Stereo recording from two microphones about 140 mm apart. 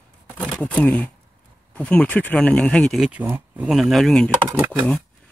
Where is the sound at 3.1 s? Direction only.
15° right (ahead or behind).